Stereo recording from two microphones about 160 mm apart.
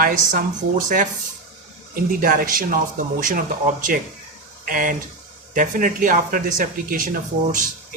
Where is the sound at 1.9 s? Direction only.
60° right (ahead or behind).